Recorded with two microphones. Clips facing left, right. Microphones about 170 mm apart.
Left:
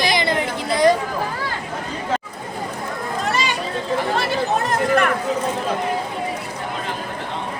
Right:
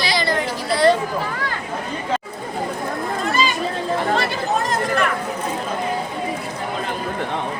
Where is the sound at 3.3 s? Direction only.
70° left (ahead or behind).